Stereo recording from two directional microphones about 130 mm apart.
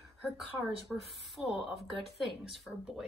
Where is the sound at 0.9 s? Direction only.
Centre (ahead or behind).